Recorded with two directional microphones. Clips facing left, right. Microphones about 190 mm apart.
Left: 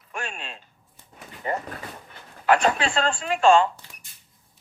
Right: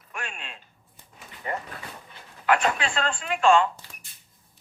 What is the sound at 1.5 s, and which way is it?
Speech, 35° left (ahead or behind).